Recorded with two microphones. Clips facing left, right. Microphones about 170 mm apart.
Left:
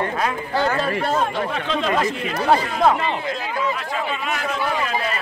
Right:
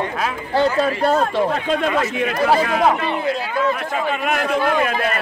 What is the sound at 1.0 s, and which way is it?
Speech, 40° right (ahead or behind).